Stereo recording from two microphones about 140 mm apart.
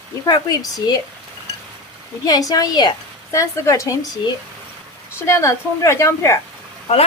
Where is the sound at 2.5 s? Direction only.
30° left (ahead or behind).